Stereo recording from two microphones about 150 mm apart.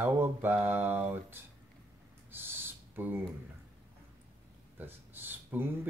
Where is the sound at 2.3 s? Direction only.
15° right (ahead or behind).